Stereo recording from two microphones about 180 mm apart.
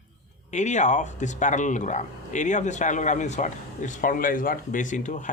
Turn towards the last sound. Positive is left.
turn(degrees=45)  # may be behind; listen again after turning